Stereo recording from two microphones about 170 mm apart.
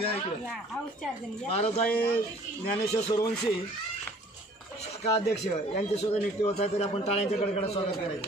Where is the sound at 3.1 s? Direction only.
20° left (ahead or behind).